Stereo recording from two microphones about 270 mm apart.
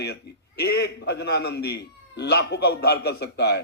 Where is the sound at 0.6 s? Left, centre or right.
Left.